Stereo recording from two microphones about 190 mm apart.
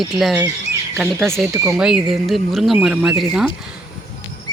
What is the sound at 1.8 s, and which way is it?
Speech, 5° right (ahead or behind).